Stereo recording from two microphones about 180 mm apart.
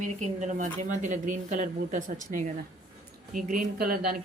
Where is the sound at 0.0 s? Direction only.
45° right (ahead or behind).